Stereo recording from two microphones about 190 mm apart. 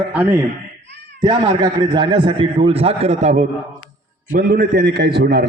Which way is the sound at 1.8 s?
25° right (ahead or behind).